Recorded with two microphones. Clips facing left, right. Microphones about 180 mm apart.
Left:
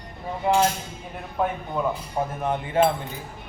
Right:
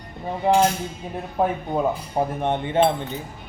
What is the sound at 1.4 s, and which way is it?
Speech, 30° right (ahead or behind).